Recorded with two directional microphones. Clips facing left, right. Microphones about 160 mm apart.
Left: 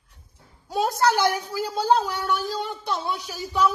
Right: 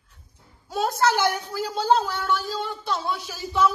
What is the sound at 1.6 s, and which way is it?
Speech, 10° left (ahead or behind).